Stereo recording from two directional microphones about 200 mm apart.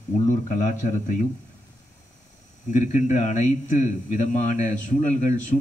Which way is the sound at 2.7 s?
35° left (ahead or behind).